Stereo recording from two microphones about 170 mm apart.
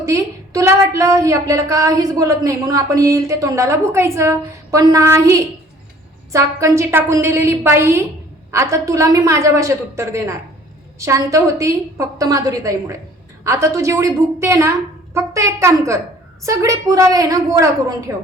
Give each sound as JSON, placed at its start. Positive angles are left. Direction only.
{"t": 0.0, "sound": "a woman's voice", "side_deg": -15}